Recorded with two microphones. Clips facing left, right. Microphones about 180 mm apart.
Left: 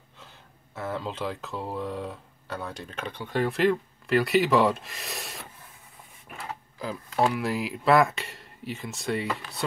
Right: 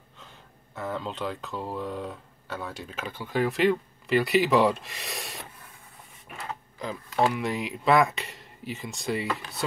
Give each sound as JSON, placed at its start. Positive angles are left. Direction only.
{"t": 0.7, "sound": "speech", "side_deg": 0}